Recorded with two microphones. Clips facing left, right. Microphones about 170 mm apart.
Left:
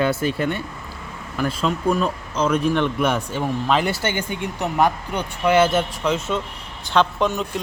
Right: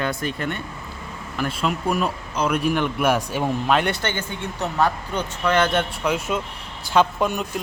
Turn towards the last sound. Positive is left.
turn(degrees=-10)  # may be behind; listen again after turning